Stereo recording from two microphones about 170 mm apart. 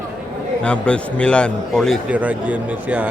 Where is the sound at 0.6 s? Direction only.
5° left (ahead or behind).